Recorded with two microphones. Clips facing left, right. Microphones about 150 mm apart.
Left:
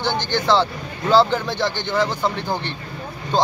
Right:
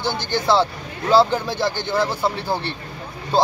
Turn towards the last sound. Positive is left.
turn(degrees=-5)  # may be behind; listen again after turning